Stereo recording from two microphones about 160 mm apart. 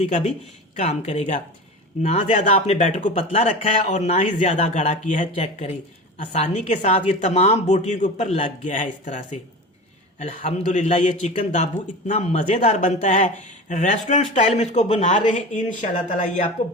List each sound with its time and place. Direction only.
0.0 s speech: 45° left (ahead or behind)